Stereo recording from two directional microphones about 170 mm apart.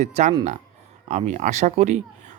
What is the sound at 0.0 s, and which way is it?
A man's voice, 40° right (ahead or behind).